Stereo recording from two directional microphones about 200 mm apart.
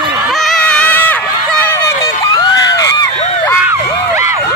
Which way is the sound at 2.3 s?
20° left (ahead or behind).